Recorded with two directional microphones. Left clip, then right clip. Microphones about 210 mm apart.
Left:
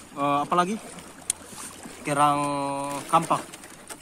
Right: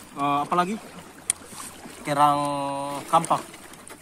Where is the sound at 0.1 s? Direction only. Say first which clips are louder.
Even; centre (ahead or behind).